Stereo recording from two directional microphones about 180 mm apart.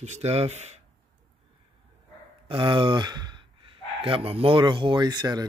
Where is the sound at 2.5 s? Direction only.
30° right (ahead or behind).